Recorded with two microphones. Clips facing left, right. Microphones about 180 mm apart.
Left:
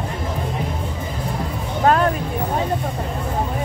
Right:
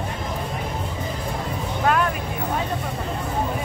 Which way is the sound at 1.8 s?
35° left (ahead or behind).